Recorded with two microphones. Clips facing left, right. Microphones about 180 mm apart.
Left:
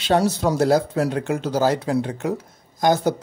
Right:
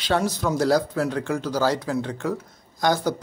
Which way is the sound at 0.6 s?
25° left (ahead or behind).